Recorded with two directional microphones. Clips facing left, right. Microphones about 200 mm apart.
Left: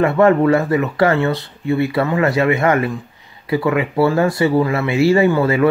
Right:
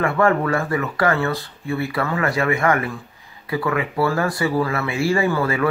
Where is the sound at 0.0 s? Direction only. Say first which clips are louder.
Left 6 dB; 25° left (ahead or behind).